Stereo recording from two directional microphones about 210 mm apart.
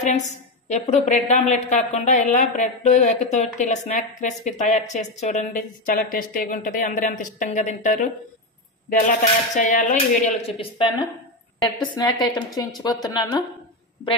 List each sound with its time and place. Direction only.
0.7 s a woman's voice: 35° left (ahead or behind)
11.8 s speech: 20° left (ahead or behind)